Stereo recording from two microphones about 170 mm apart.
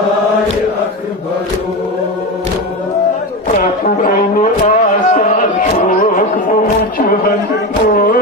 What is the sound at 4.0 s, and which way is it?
Music, 50° left (ahead or behind).